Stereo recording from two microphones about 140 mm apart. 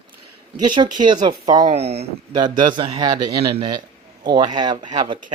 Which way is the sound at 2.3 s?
35° right (ahead or behind).